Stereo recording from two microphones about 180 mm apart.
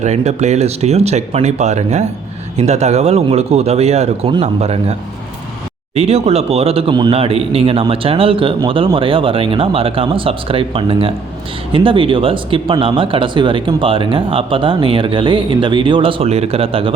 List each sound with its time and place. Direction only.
0.0 s speech: 40° right (ahead or behind)